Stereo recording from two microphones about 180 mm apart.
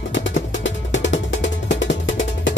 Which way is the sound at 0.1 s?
90° left.